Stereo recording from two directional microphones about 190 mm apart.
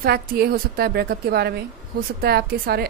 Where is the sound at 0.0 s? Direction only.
55° right (ahead or behind).